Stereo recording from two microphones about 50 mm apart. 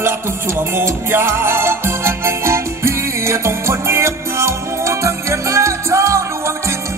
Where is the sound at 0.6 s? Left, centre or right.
Right.